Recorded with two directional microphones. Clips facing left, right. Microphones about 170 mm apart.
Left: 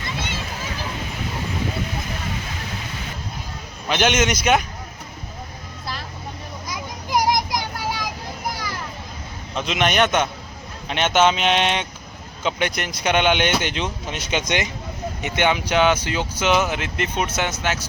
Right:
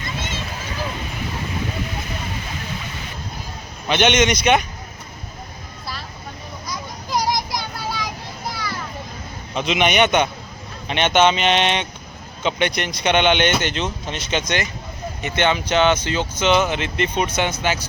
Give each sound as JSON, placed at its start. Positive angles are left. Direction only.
{"t": 3.8, "sound": "speech", "side_deg": 5}
{"t": 7.1, "sound": "child singing", "side_deg": 15}
{"t": 9.6, "sound": "speech", "side_deg": 0}